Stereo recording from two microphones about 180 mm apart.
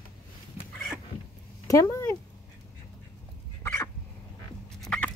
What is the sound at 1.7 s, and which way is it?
Speech, 15° left (ahead or behind).